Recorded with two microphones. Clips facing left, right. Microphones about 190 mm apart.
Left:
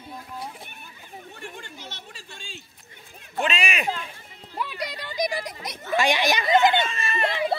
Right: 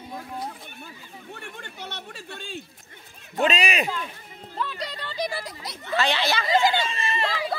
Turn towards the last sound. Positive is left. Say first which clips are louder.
# right 1 dB
turn(degrees=-30)  # may be behind; listen again after turning